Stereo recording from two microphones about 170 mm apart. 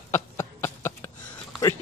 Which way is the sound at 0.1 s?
15° left (ahead or behind).